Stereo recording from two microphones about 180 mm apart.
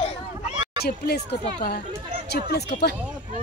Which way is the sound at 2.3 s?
65° left (ahead or behind).